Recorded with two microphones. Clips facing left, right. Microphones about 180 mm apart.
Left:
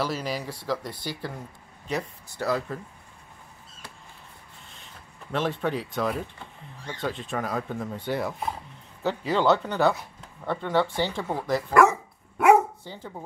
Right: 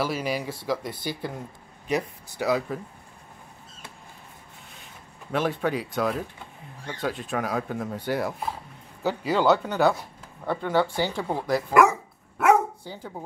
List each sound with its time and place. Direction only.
0.0 s speech: 5° right (ahead or behind)
0.4 s speech: 20° right (ahead or behind)
5.3 s speech: 5° right (ahead or behind)
11.7 s dog: 10° right (ahead or behind)
12.9 s speech: 10° right (ahead or behind)